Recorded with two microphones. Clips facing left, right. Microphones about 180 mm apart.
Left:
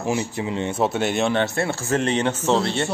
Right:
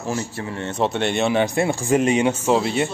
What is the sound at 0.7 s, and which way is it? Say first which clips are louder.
A man's voice: right 2 dB; 5° left (ahead or behind).